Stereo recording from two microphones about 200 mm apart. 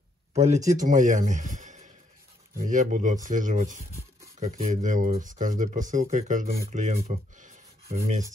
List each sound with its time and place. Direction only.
0.3 s speech: 35° right (ahead or behind)